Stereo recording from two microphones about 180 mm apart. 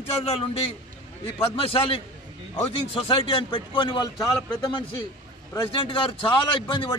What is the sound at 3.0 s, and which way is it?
A man's voice, 30° left (ahead or behind).